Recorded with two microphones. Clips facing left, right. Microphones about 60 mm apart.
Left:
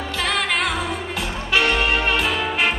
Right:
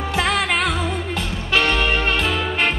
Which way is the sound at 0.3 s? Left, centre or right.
Centre.